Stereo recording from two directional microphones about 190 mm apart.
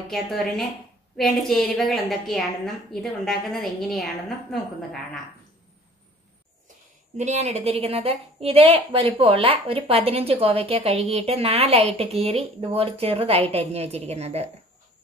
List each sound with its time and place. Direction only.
0.1 s a woman's voice: centre (ahead or behind)
7.2 s speech: 35° right (ahead or behind)